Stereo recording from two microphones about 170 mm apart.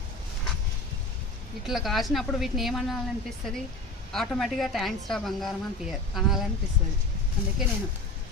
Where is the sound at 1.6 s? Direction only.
Centre (ahead or behind).